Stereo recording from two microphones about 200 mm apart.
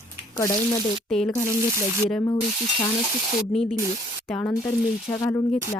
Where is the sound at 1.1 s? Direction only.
Centre (ahead or behind).